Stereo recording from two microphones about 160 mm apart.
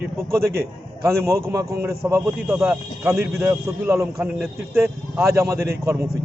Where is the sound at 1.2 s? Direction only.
20° right (ahead or behind).